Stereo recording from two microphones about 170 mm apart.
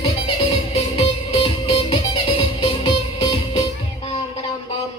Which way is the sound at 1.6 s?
30° left (ahead or behind).